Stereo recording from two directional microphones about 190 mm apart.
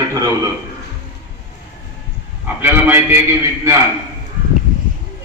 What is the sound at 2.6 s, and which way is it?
Speech, 10° right (ahead or behind).